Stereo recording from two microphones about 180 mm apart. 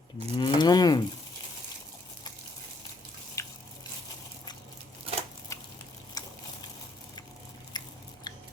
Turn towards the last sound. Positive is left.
turn(degrees=25)  # may be behind; listen again after turning